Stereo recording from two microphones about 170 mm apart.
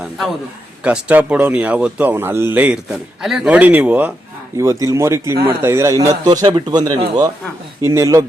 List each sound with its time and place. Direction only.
0.9 s speech: 5° right (ahead or behind)